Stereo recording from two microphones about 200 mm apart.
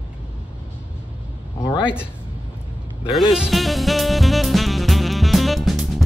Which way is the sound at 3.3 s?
Centre (ahead or behind).